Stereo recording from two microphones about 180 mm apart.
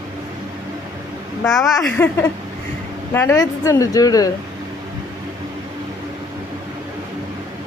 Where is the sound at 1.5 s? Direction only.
Centre (ahead or behind).